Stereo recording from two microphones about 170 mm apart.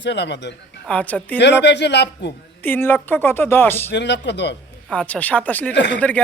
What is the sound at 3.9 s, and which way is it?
Speech, 90° left.